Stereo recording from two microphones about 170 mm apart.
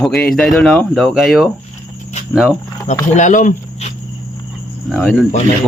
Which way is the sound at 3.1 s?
45° left (ahead or behind).